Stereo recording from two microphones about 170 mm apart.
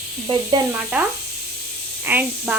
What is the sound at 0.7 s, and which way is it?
Speech, 10° right (ahead or behind).